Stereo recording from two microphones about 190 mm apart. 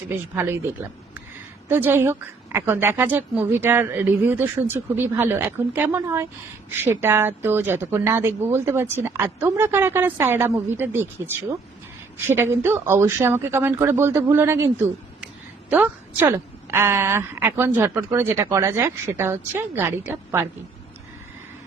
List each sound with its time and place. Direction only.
0.1 s speech: 10° right (ahead or behind)
1.6 s speech: 10° right (ahead or behind)
15.7 s a woman's voice: 10° right (ahead or behind)